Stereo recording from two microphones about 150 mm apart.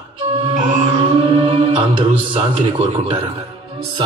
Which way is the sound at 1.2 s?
35° right (ahead or behind).